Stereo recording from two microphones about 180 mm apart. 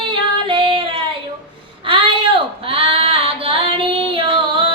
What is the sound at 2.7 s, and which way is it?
Child singing, 30° right (ahead or behind).